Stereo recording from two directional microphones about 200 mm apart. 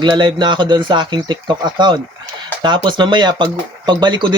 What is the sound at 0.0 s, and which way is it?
Speech, 25° right (ahead or behind).